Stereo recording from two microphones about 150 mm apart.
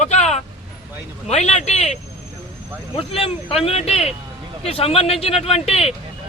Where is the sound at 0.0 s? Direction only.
50° left (ahead or behind).